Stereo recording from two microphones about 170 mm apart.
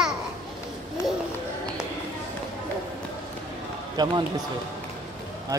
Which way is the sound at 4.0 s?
25° right (ahead or behind).